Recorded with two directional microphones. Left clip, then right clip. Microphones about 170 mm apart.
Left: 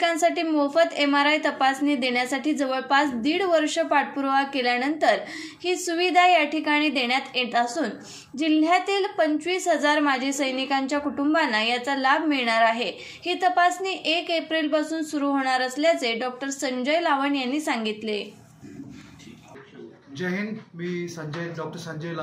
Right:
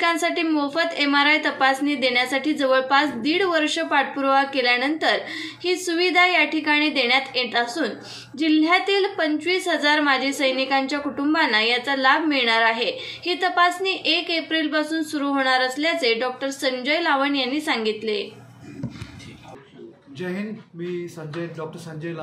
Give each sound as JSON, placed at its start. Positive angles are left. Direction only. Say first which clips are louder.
{"t": 0.2, "sound": "a woman's voice", "louder": "even", "side_deg": 40}
{"t": 20.2, "sound": "speech", "louder": "left 1 dB", "side_deg": -5}